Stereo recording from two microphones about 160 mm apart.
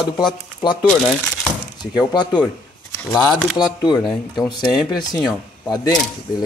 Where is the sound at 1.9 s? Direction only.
25° left (ahead or behind).